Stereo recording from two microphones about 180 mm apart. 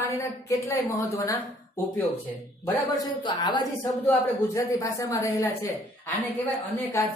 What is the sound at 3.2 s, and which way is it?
A woman's voice, 25° left (ahead or behind).